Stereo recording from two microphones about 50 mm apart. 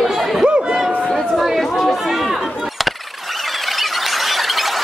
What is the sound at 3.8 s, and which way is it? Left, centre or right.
Squeal, centre.